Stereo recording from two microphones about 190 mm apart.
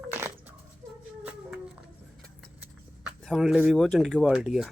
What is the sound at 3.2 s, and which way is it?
Speech, centre (ahead or behind).